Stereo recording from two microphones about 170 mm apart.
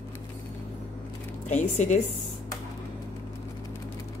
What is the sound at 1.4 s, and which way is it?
Speech, 45° left (ahead or behind).